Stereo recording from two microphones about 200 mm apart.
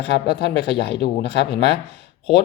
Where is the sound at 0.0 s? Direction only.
55° left (ahead or behind).